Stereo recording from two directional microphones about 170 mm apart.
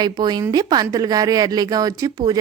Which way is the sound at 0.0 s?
25° right (ahead or behind).